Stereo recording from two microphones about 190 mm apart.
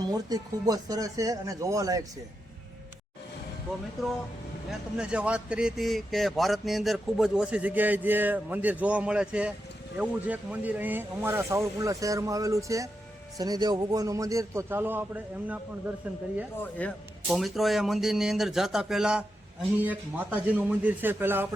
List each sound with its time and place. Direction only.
0.0 s speech: 20° right (ahead or behind)
4.7 s speech: 5° right (ahead or behind)
16.6 s speech: 5° left (ahead or behind); by 21.4 s 10° right (ahead or behind)